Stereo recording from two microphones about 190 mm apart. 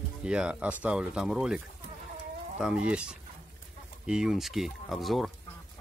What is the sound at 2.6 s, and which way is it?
Speech, 5° right (ahead or behind).